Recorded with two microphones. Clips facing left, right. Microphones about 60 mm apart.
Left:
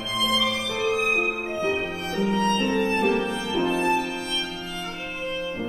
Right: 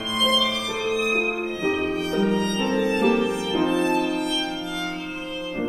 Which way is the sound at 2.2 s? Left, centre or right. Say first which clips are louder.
Right 1 dB; right.